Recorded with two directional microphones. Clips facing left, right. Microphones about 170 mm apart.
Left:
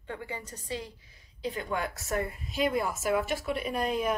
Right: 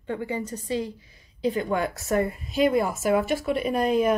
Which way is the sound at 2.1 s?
65° right (ahead or behind).